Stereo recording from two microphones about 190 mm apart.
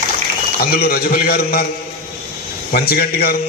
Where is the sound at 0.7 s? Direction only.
55° left (ahead or behind).